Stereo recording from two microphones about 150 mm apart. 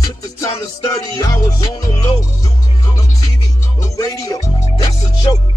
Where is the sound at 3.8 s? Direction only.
25° left (ahead or behind).